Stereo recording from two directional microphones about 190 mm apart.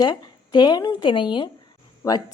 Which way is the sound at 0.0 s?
25° left (ahead or behind).